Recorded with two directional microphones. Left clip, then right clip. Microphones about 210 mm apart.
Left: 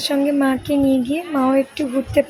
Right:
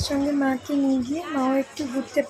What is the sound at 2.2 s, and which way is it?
Speech, 15° left (ahead or behind).